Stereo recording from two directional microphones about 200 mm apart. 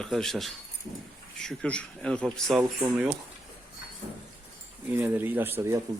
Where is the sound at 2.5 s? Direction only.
5° right (ahead or behind).